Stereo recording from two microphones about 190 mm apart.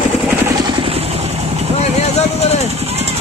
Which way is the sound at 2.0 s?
35° left (ahead or behind).